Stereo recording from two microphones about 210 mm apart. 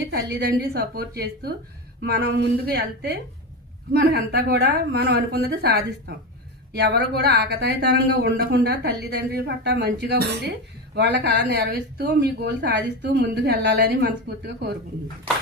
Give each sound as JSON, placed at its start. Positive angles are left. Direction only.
{"t": 0.3, "sound": "speech", "side_deg": -50}